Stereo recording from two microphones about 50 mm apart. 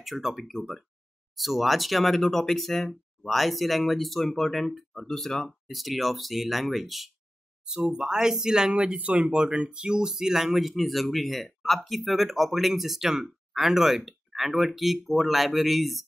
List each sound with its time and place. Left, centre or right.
0.0 s speech: centre
7.6 s speech: centre